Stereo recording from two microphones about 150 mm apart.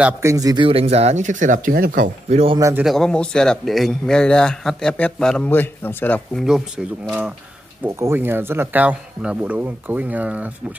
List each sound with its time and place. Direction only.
0.2 s a man's voice: 20° right (ahead or behind)
0.7 s speech: 40° right (ahead or behind); by 2.1 s 70° right (ahead or behind)
2.2 s speech: 40° right (ahead or behind)
2.8 s speech: centre (ahead or behind)
6.4 s speech: 5° right (ahead or behind)
7.8 s speech: 15° right (ahead or behind)